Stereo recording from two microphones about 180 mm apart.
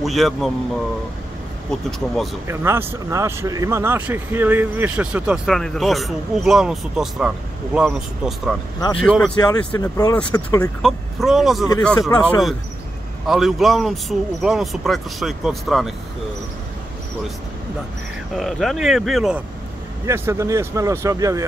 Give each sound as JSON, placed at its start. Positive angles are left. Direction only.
{"t": 0.0, "sound": "speech", "side_deg": 0}
{"t": 1.7, "sound": "speech", "side_deg": 5}
{"t": 2.4, "sound": "speech", "side_deg": -15}
{"t": 9.4, "sound": "speech", "side_deg": 20}
{"t": 10.8, "sound": "speech", "side_deg": 0}
{"t": 18.3, "sound": "speech", "side_deg": 0}
{"t": 20.1, "sound": "speech", "side_deg": -15}